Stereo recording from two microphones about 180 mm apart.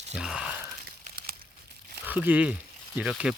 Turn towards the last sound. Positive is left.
turn(degrees=-5)  # may be behind; listen again after turning